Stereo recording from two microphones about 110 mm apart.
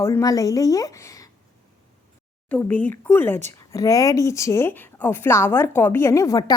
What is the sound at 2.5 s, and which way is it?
Speech, 15° left (ahead or behind).